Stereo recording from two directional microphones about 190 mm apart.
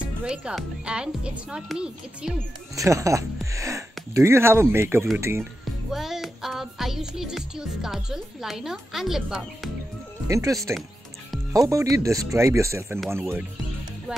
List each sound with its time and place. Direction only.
0.2 s speech: 5° right (ahead or behind)
2.7 s speech: 15° right (ahead or behind)
5.9 s music: centre (ahead or behind)
10.2 s speech: 15° right (ahead or behind)
11.5 s speech: 20° right (ahead or behind)